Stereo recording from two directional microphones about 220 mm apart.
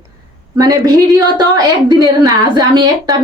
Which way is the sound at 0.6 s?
15° right (ahead or behind).